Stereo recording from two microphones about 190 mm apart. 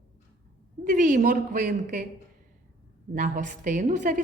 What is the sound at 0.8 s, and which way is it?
A woman's voice, 45° right (ahead or behind).